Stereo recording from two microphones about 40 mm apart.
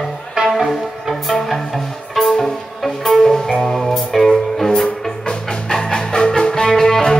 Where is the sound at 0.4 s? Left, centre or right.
Centre.